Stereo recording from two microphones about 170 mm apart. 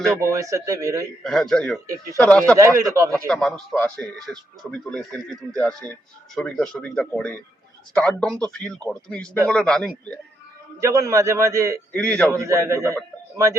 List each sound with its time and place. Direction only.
0.2 s speech: 20° right (ahead or behind)
1.2 s a man's voice: centre (ahead or behind)
2.6 s speech: 20° right (ahead or behind)
3.2 s speech: 5° left (ahead or behind)
10.8 s a man's voice: 20° right (ahead or behind)
11.9 s a man's voice: 5° left (ahead or behind)
12.3 s a man's voice: 15° right (ahead or behind)